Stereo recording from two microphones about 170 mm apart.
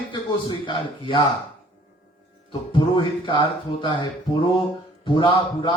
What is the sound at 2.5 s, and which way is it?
A man's voice, 30° left (ahead or behind).